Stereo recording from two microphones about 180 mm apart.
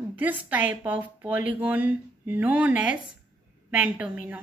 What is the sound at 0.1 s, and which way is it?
A woman's voice, 10° right (ahead or behind).